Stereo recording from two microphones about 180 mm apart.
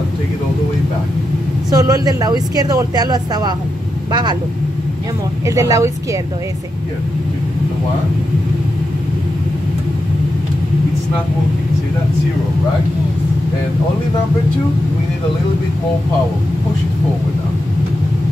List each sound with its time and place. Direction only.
1.7 s speech: 20° right (ahead or behind)
5.5 s speech: 15° right (ahead or behind)